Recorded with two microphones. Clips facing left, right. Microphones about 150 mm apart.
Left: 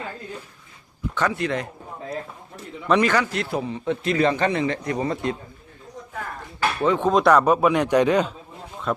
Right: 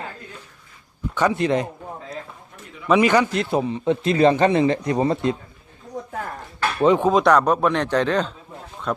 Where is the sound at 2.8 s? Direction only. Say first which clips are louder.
Right 3 dB; 10° right (ahead or behind); by 5.4 s 30° right (ahead or behind).